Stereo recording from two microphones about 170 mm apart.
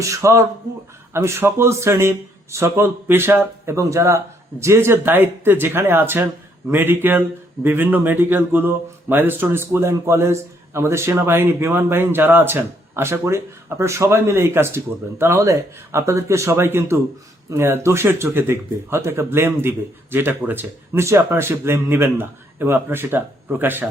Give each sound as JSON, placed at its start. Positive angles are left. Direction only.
{"t": 0.0, "sound": "speech", "side_deg": -15}